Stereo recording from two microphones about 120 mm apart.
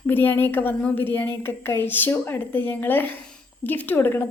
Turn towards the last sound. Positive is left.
turn(degrees=15)  # may be behind; listen again after turning